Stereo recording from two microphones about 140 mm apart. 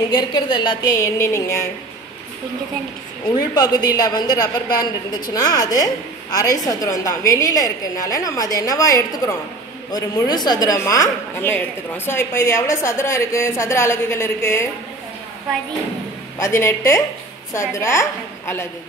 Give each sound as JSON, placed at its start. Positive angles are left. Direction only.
{"t": 0.1, "sound": "a woman's voice", "side_deg": 35}
{"t": 3.5, "sound": "a woman's voice", "side_deg": 30}
{"t": 16.3, "sound": "a woman's voice", "side_deg": 20}